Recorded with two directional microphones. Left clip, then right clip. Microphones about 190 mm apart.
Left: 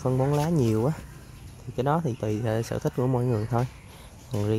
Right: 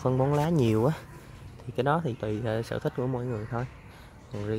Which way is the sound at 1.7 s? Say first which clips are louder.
Left 1 dB; 10° left (ahead or behind).